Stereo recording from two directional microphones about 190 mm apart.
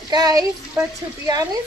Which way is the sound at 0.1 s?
20° right (ahead or behind).